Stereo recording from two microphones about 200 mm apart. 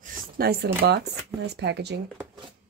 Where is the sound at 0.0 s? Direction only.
45° right (ahead or behind).